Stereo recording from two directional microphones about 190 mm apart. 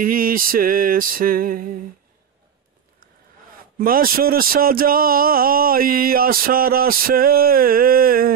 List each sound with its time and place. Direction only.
0.0 s speech: 50° right (ahead or behind)
3.7 s speech: 50° right (ahead or behind)